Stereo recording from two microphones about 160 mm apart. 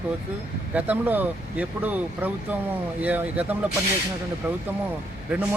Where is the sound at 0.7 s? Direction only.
10° right (ahead or behind).